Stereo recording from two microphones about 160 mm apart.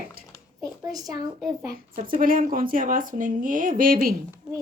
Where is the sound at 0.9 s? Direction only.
25° right (ahead or behind).